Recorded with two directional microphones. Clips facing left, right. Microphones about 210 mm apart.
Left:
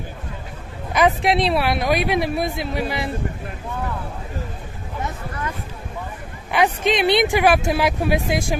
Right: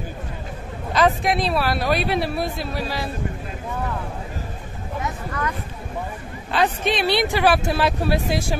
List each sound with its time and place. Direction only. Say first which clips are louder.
0.9 s speech: left 2 dB; 20° left (ahead or behind)
6.5 s speech: left 2 dB; 15° left (ahead or behind)